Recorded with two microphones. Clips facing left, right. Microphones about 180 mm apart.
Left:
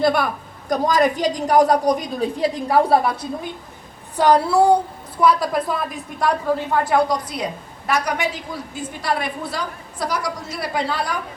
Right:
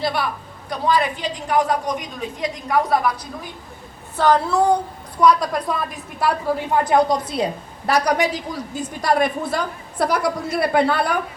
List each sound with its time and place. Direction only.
0.0 s a woman's voice: 50° left (ahead or behind); by 3.2 s 30° left (ahead or behind)
4.2 s a woman's voice: 10° left (ahead or behind)
6.8 s a woman's voice: 20° right (ahead or behind)
7.9 s a woman's voice: 35° right (ahead or behind); by 11.2 s 60° right (ahead or behind)